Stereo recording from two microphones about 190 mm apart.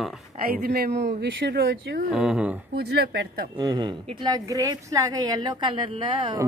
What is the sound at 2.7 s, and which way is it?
Speech, 55° right (ahead or behind).